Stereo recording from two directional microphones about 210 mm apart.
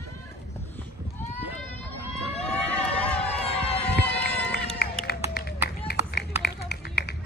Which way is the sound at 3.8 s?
5° left (ahead or behind).